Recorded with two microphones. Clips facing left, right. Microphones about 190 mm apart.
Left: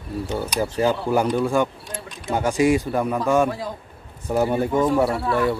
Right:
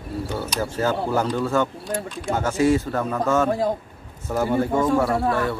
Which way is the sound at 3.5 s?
45° right (ahead or behind).